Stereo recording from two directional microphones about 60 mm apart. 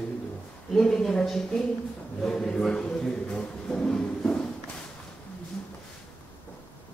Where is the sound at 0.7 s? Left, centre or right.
Centre.